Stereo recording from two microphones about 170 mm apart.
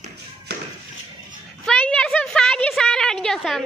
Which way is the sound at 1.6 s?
5° left (ahead or behind).